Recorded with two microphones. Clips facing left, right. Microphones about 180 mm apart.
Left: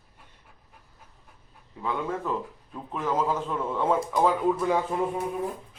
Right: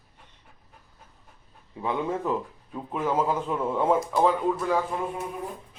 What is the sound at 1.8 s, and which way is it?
A man's voice, 20° right (ahead or behind).